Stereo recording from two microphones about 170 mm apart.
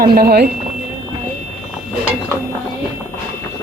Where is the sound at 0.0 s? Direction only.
65° right (ahead or behind).